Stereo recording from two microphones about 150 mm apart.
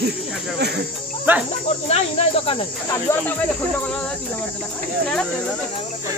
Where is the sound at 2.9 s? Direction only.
15° left (ahead or behind).